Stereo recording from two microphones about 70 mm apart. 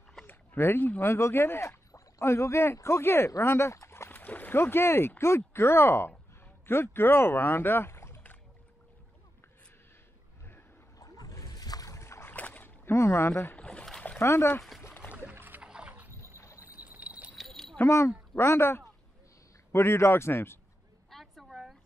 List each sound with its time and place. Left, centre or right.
0.3 s a man's voice: left
4.2 s speech: left
11.0 s rowboat: left
12.3 s splash: left
12.8 s speech: left
13.6 s boat: centre
14.2 s a man's voice: left
15.3 s rowboat: right
15.6 s a sound: centre
16.1 s rowboat: right
16.5 s pour: right
17.4 s a sound: centre
17.8 s a man's voice: left
21.1 s a sound: centre